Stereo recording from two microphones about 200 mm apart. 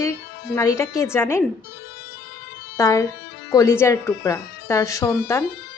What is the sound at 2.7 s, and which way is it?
Speech, 15° left (ahead or behind).